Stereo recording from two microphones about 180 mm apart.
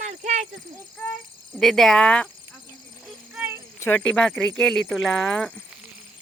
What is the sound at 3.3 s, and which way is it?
Cricket, 5° right (ahead or behind).